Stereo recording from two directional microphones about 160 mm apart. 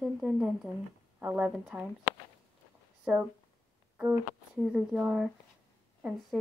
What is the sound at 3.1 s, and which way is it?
A woman's voice, 10° right (ahead or behind).